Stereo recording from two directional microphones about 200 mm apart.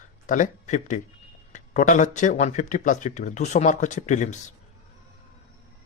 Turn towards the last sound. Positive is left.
turn(degrees=40)  # may be behind; listen again after turning